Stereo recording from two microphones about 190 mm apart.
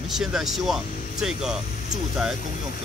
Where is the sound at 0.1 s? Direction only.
Centre (ahead or behind).